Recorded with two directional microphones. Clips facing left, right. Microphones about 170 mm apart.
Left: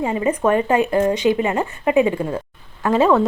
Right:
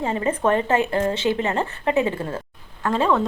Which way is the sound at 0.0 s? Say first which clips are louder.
Left 3 dB; 10° left (ahead or behind).